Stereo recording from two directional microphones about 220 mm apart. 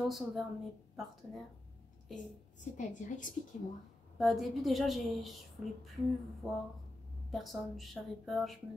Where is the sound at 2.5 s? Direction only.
35° left (ahead or behind).